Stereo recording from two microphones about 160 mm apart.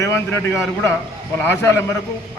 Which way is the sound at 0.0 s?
15° left (ahead or behind).